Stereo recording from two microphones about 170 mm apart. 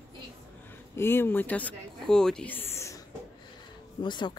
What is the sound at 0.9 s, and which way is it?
Speech, 15° left (ahead or behind).